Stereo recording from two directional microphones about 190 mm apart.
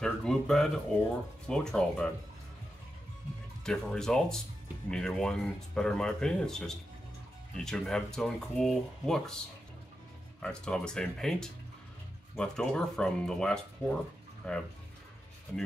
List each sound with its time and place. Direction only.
0.0 s a sound: 5° left (ahead or behind)
1.5 s speech: 5° left (ahead or behind)
3.6 s speech: 5° left (ahead or behind)
10.4 s speech: 5° left (ahead or behind)